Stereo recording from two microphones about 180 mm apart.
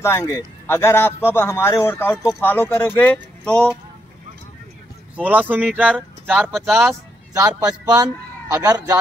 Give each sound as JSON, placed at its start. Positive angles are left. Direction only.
{"t": 0.0, "sound": "a man's voice", "side_deg": 15}
{"t": 5.1, "sound": "speech", "side_deg": -10}
{"t": 7.3, "sound": "a man's voice", "side_deg": -20}